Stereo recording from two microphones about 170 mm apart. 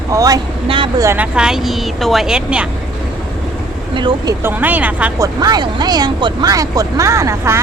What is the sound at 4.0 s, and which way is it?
Speech, 25° right (ahead or behind).